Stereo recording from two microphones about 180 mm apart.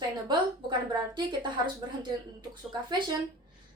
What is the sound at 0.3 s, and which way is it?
A woman's voice, 25° right (ahead or behind).